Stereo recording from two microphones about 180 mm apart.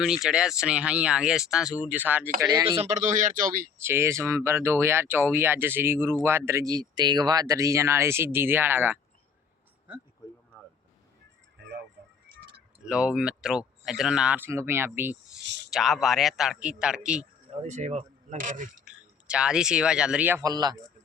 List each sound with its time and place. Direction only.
0.0 s speech: 5° right (ahead or behind)
2.4 s speech: 20° right (ahead or behind)
2.8 s speech: 40° right (ahead or behind)
3.8 s speech: 15° right (ahead or behind)
12.8 s speech: 5° right (ahead or behind)
15.4 s a sound: 75° right (ahead or behind)
15.7 s speech: centre (ahead or behind)
17.5 s speech: 40° right (ahead or behind)
18.9 s speech: 5° right (ahead or behind)
20.4 s speech: 20° right (ahead or behind)